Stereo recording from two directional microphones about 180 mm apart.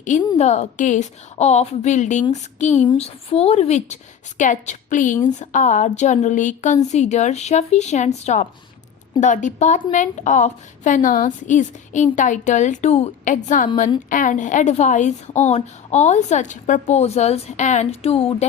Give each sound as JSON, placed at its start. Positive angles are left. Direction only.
{"t": 0.0, "sound": "a woman's voice", "side_deg": 40}